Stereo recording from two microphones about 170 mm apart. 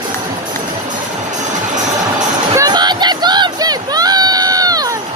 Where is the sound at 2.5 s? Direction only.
20° right (ahead or behind).